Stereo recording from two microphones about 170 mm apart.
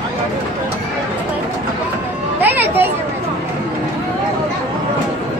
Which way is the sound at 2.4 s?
10° right (ahead or behind).